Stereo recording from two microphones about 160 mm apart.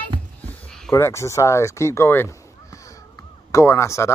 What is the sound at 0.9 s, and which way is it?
Speech, 15° left (ahead or behind).